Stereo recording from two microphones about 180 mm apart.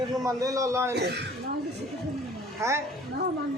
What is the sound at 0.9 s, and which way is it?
Speech, 65° right (ahead or behind).